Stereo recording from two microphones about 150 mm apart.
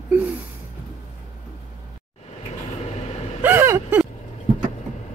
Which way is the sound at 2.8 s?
40° left (ahead or behind).